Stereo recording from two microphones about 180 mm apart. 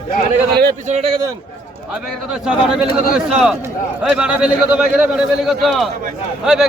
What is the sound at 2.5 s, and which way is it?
A man's voice, 5° right (ahead or behind).